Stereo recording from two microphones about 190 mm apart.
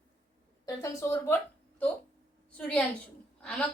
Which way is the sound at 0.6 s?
15° left (ahead or behind).